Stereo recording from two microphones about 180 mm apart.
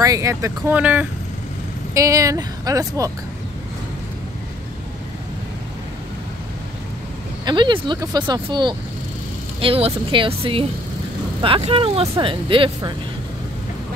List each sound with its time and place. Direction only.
0.0 s speech: 20° right (ahead or behind)
7.4 s speech: 25° right (ahead or behind)